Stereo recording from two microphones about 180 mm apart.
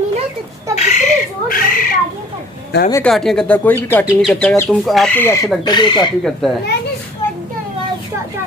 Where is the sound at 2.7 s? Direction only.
65° left (ahead or behind).